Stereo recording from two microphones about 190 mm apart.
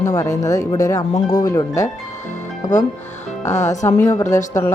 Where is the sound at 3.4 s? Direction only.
40° left (ahead or behind).